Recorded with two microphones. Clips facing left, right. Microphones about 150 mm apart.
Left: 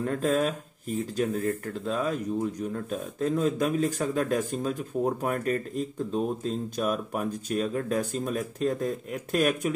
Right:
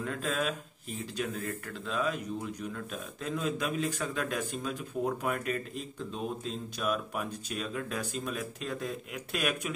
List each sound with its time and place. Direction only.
0.0 s speech: 40° left (ahead or behind)